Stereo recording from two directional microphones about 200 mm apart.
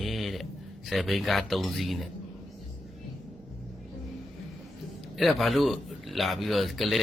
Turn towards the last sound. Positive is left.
turn(degrees=0)  # may be behind; listen again after turning